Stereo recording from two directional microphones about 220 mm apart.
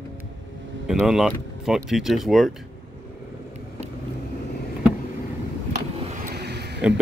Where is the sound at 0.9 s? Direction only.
Centre (ahead or behind).